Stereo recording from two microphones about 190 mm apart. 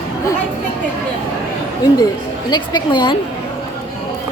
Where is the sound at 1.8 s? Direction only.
20° left (ahead or behind).